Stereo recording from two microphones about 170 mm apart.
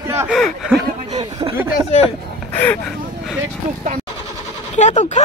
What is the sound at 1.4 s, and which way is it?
Speech, 25° right (ahead or behind).